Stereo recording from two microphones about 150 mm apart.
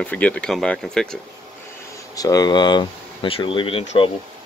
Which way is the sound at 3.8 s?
50° left (ahead or behind).